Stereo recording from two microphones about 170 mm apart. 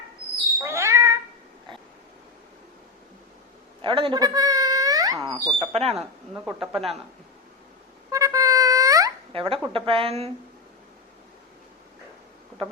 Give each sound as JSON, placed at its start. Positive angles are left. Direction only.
{"t": 0.6, "sound": "cat", "side_deg": -15}
{"t": 3.8, "sound": "speech", "side_deg": -30}
{"t": 5.5, "sound": "a woman's voice", "side_deg": -35}
{"t": 6.0, "sound": "a woman's voice", "side_deg": 0}
{"t": 8.1, "sound": "a sound", "side_deg": -20}
{"t": 9.3, "sound": "a woman's voice", "side_deg": -30}